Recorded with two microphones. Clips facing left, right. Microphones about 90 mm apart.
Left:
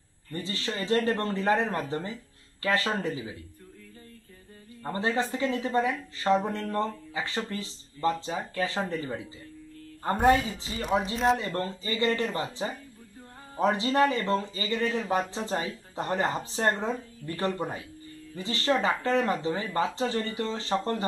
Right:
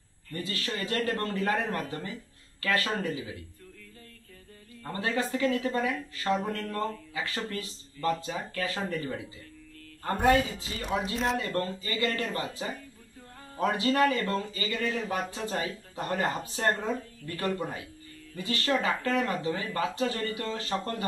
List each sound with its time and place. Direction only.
0.3 s speech: 25° left (ahead or behind)
4.8 s speech: 25° left (ahead or behind)